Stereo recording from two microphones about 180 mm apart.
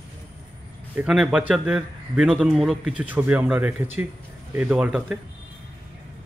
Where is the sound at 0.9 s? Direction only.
5° right (ahead or behind).